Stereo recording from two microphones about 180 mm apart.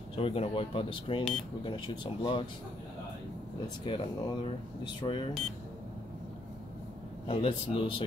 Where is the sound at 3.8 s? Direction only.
30° left (ahead or behind).